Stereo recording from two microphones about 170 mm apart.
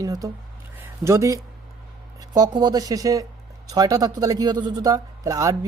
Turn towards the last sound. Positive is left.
turn(degrees=-20)  # may be behind; listen again after turning